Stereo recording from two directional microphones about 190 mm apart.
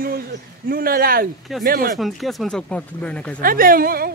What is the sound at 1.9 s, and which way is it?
Speech, centre (ahead or behind).